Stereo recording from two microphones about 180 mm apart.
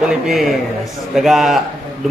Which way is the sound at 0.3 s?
Centre (ahead or behind).